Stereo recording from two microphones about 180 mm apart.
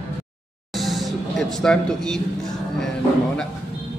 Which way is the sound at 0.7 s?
Centre (ahead or behind).